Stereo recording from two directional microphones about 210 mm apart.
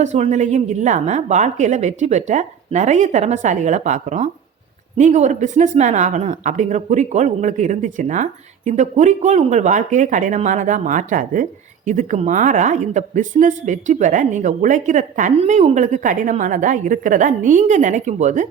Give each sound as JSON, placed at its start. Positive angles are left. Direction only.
{"t": 0.0, "sound": "a woman's voice", "side_deg": -30}